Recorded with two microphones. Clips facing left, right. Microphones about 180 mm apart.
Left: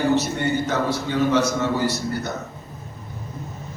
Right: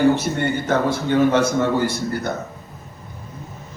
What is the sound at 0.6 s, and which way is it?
A man's voice, 55° right (ahead or behind).